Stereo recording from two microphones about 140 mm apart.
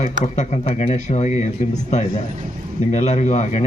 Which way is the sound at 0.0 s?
55° left (ahead or behind).